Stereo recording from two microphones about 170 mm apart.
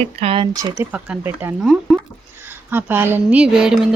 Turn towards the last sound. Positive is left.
turn(degrees=-5)  # may be behind; listen again after turning